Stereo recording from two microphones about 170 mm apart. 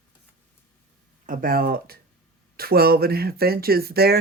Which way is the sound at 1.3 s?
55° right (ahead or behind).